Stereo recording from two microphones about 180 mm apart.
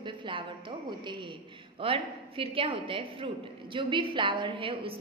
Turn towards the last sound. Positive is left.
turn(degrees=-30)  # may be behind; listen again after turning